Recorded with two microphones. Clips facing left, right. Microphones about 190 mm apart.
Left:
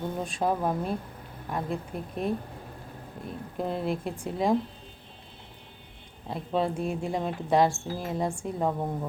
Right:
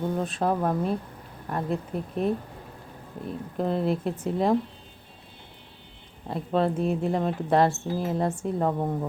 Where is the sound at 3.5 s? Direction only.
5° left (ahead or behind).